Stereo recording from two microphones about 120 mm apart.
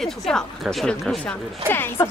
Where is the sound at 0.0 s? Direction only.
5° left (ahead or behind).